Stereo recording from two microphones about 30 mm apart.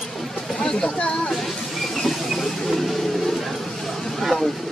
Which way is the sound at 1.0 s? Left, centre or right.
Left.